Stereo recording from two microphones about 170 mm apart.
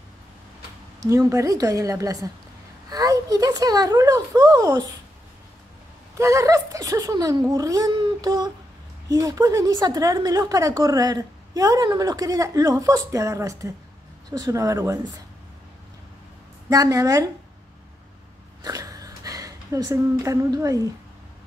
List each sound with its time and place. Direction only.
1.0 s speech: 20° right (ahead or behind)
6.1 s speech: 15° right (ahead or behind)
16.6 s speech: 20° right (ahead or behind)
18.6 s a sound: 20° right (ahead or behind)